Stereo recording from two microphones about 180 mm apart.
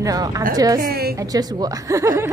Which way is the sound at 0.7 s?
55° right (ahead or behind).